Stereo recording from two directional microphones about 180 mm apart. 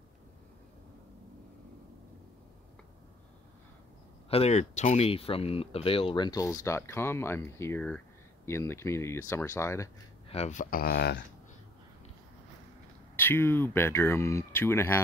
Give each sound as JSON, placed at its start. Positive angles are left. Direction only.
{"t": 4.3, "sound": "speech", "side_deg": 35}
{"t": 10.2, "sound": "speech", "side_deg": 35}
{"t": 13.1, "sound": "speech", "side_deg": 10}